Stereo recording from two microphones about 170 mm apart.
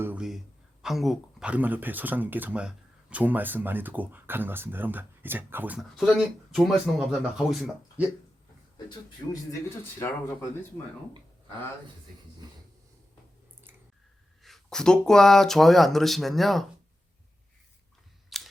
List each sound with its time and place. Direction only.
0.0 s speech: 5° right (ahead or behind)
6.0 s speech: centre (ahead or behind)
8.9 s speech: 20° left (ahead or behind)
14.4 s speech: centre (ahead or behind)
18.3 s camera: centre (ahead or behind)